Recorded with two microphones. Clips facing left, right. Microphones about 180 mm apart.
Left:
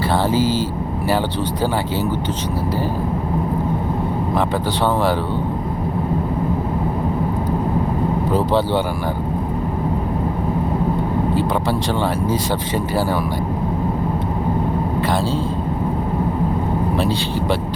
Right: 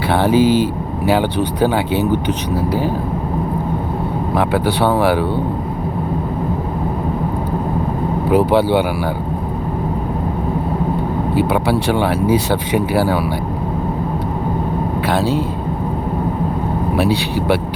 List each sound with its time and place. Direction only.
0.1 s vehicle: 60° right (ahead or behind)
0.3 s speech: 15° right (ahead or behind)
4.5 s speech: 10° right (ahead or behind)
8.3 s speech: 15° right (ahead or behind)
11.9 s speech: 15° right (ahead or behind)